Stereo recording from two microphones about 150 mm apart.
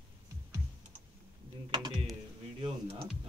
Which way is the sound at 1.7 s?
30° right (ahead or behind).